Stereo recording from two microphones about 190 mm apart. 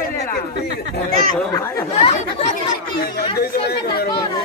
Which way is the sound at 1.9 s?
35° left (ahead or behind).